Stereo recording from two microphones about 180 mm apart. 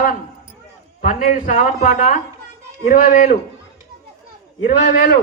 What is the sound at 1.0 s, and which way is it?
A man's voice, 45° left (ahead or behind).